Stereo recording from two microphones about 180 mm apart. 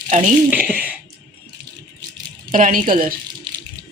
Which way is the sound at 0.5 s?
10° right (ahead or behind).